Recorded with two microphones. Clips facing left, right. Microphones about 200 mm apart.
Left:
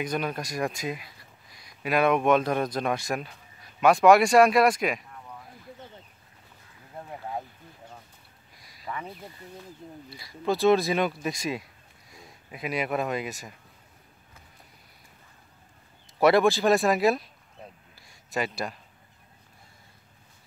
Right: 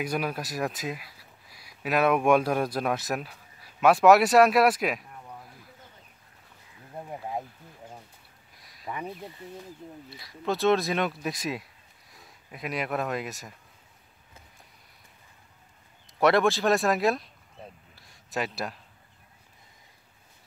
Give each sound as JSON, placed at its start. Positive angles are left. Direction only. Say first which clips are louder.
{"t": 0.0, "sound": "speech", "louder": "even", "side_deg": -5}
{"t": 8.5, "sound": "a sound", "louder": "left 1 dB", "side_deg": 0}
{"t": 8.8, "sound": "speech", "louder": "right 1 dB", "side_deg": -15}
{"t": 10.0, "sound": "speech", "louder": "left 2 dB", "side_deg": 0}
{"t": 16.2, "sound": "speech", "louder": "left 2 dB", "side_deg": 0}
{"t": 17.9, "sound": "a sound", "louder": "left 2 dB", "side_deg": 0}